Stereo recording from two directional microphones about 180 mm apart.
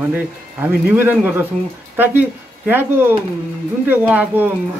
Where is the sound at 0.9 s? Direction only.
10° right (ahead or behind).